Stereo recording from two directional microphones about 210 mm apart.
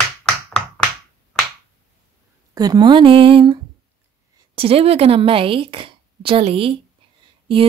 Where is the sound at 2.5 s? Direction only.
20° right (ahead or behind).